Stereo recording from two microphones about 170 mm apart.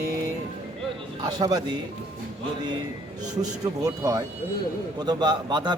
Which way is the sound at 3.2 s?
20° right (ahead or behind).